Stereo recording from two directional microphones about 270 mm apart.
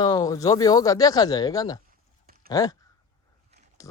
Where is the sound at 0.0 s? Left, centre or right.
Centre.